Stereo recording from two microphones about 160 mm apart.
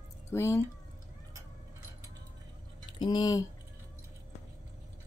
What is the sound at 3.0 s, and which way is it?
Speech, 25° left (ahead or behind).